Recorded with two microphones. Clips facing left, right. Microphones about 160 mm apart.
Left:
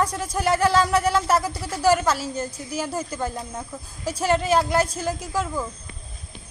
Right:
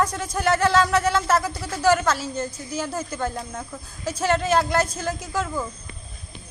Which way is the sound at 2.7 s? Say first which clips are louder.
Left 1 dB; 5° left (ahead or behind).